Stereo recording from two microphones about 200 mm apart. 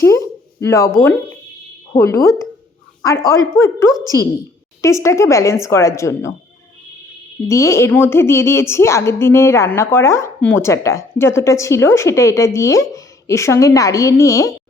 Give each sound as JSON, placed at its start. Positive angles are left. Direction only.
{"t": 0.0, "sound": "a sound", "side_deg": 15}
{"t": 1.9, "sound": "speech", "side_deg": 15}
{"t": 3.6, "sound": "a woman's voice", "side_deg": 15}
{"t": 7.4, "sound": "a woman's voice", "side_deg": 15}